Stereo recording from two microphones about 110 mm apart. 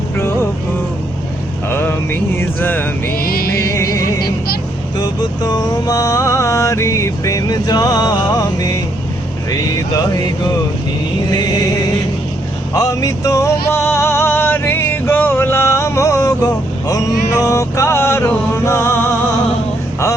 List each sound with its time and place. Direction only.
1.7 s a sound: 20° left (ahead or behind)
3.8 s music: 30° left (ahead or behind)
9.5 s vehicle: 30° left (ahead or behind)
11.3 s music: 35° left (ahead or behind)